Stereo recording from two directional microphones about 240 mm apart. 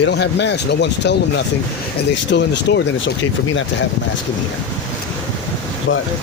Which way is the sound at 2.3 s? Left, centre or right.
Left.